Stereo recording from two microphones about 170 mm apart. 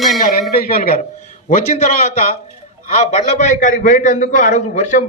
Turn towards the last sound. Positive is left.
turn(degrees=45)  # may be behind; listen again after turning